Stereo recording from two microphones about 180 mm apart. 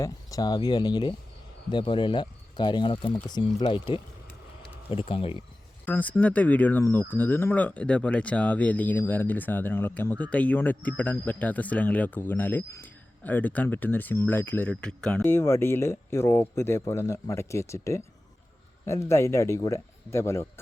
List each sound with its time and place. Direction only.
0.0 s speech: 20° left (ahead or behind)
5.8 s speech: 10° left (ahead or behind)